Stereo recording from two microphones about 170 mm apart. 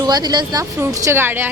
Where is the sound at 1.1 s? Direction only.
15° right (ahead or behind).